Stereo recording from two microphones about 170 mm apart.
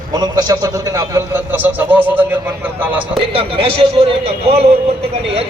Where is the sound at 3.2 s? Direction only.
35° right (ahead or behind).